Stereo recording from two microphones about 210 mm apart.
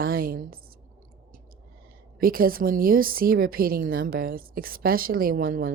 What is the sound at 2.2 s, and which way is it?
A woman's voice, 45° right (ahead or behind).